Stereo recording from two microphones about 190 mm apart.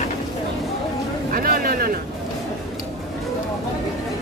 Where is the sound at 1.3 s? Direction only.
50° right (ahead or behind).